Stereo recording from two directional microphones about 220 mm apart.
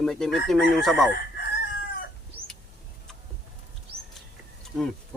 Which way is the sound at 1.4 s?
45° left (ahead or behind).